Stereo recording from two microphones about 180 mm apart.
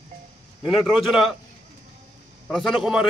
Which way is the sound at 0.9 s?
Centre (ahead or behind).